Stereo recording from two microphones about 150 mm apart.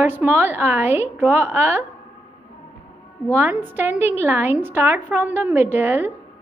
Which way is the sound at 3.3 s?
15° right (ahead or behind).